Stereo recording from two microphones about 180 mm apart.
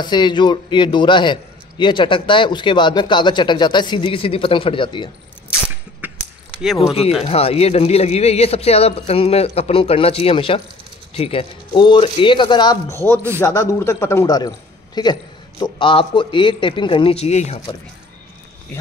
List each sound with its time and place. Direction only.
0.0 s a man's voice: 25° left (ahead or behind)
6.0 s a sound: 10° right (ahead or behind)
7.2 s a man's voice: 35° left (ahead or behind)